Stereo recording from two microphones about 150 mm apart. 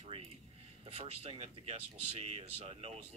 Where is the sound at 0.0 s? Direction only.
45° right (ahead or behind).